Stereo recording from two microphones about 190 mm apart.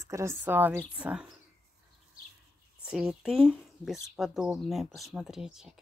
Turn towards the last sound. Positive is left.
turn(degrees=-5)  # may be behind; listen again after turning